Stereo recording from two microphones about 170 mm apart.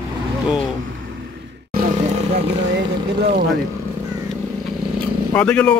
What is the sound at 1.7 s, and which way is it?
Vehicle, 50° right (ahead or behind).